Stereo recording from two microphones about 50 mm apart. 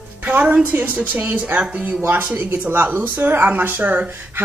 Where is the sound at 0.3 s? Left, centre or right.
Right.